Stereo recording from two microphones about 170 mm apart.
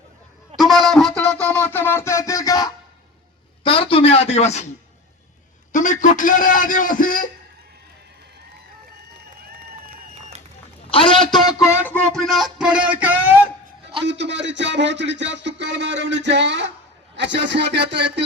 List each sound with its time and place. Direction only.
0.5 s wind instrument: centre (ahead or behind); by 2.7 s 20° left (ahead or behind)
3.6 s speech: 30° left (ahead or behind)
5.7 s a man's voice: 45° left (ahead or behind)
10.8 s speech: 30° left (ahead or behind); by 13.3 s 10° right (ahead or behind)
14.0 s speech: 90° right